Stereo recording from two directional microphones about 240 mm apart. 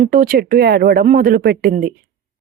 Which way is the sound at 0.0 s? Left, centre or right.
Right.